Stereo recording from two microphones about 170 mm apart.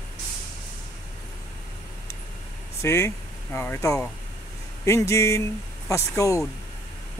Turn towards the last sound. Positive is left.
turn(degrees=20)  # may be behind; listen again after turning